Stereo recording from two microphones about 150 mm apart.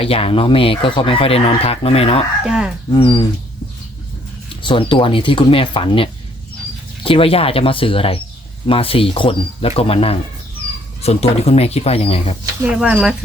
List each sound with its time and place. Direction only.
0.0 s speech: 40° left (ahead or behind)
2.4 s speech: 5° right (ahead or behind)
2.9 s speech: 30° left (ahead or behind)
4.6 s speech: 35° left (ahead or behind)
12.8 s speech: 5° right (ahead or behind)